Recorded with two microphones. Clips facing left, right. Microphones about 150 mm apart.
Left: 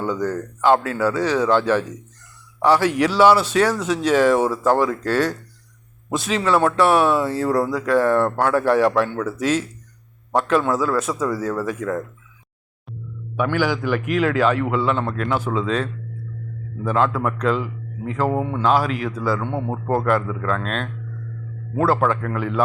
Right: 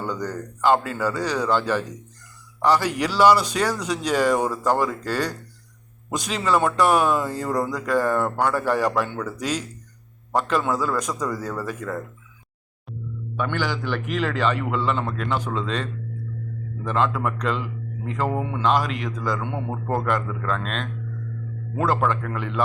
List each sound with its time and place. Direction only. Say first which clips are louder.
0.3 s speech: left 2 dB; centre (ahead or behind)
4.8 s speech: left 5 dB; 5° right (ahead or behind)
8.0 s speech: left 4 dB; 10° right (ahead or behind)
10.8 s a man's voice: left 4 dB; 5° left (ahead or behind)
13.3 s a man's voice: left 5 dB; 10° left (ahead or behind)
19.5 s a man's voice: left 4 dB; 30° left (ahead or behind)
19.9 s speech: left 5 dB; 5° left (ahead or behind)